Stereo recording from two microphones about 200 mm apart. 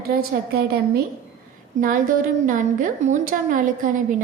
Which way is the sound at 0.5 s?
50° right (ahead or behind).